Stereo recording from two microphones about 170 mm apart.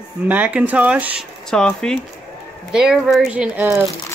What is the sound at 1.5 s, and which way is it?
Speech, 5° left (ahead or behind).